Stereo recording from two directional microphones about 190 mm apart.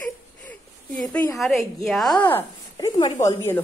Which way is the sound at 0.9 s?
5° left (ahead or behind).